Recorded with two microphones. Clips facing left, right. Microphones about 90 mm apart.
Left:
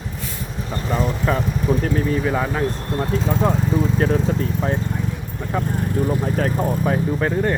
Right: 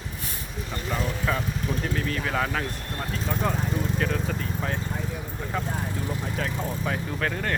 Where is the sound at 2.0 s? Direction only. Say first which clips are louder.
Left 6 dB; 15° left (ahead or behind).